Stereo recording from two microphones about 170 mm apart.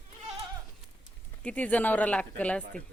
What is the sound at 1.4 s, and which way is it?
Speech, 10° left (ahead or behind).